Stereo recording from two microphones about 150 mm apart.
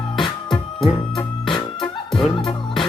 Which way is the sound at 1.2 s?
30° left (ahead or behind).